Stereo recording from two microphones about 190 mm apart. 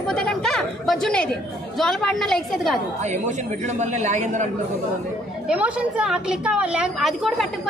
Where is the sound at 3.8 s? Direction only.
35° right (ahead or behind).